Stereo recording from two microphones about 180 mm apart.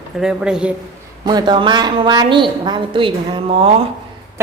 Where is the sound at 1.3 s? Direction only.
25° right (ahead or behind).